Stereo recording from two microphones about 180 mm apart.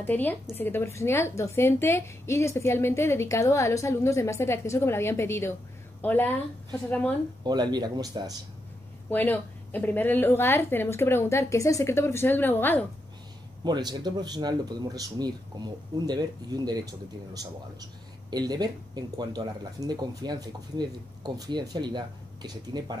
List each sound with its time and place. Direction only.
0.0 s a woman's voice: 10° left (ahead or behind)
7.4 s speech: 25° right (ahead or behind)
9.1 s a woman's voice: 10° left (ahead or behind)
13.7 s speech: 25° right (ahead or behind)